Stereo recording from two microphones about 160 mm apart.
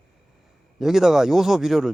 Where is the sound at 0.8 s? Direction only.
5° right (ahead or behind).